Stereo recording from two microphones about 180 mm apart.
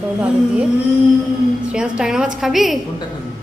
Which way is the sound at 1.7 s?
5° right (ahead or behind).